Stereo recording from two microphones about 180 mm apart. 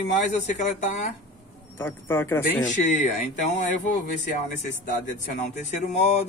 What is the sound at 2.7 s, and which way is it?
Speech, 45° left (ahead or behind).